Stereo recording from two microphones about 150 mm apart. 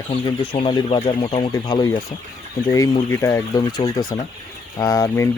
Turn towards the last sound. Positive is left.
turn(degrees=20)  # may be behind; listen again after turning